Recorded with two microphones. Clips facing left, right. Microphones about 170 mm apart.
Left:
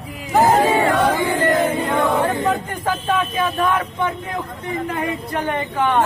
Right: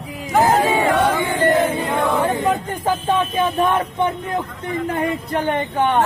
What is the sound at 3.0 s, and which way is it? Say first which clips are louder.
Speech: right 1 dB; 20° right (ahead or behind).